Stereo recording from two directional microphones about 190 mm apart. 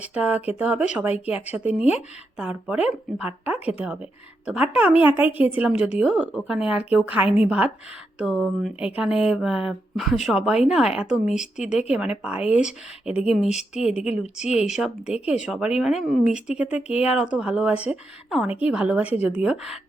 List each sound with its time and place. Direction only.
0.1 s speech: 5° right (ahead or behind)
14.8 s speech: 5° right (ahead or behind)